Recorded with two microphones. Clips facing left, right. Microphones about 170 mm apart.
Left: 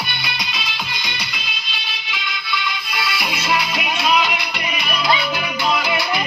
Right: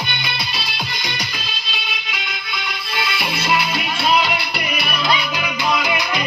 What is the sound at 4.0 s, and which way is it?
Music, 30° right (ahead or behind).